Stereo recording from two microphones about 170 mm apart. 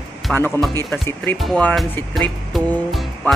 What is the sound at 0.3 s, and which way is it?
A man's voice, 10° left (ahead or behind).